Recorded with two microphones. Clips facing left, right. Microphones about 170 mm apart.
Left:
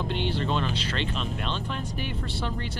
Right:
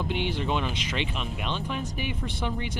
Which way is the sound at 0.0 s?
10° right (ahead or behind).